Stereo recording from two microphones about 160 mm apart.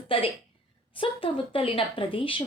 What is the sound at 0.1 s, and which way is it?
A woman's voice, 35° left (ahead or behind).